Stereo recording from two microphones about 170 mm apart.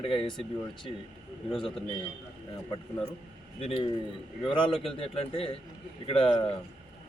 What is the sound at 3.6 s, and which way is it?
A man's voice, 35° left (ahead or behind).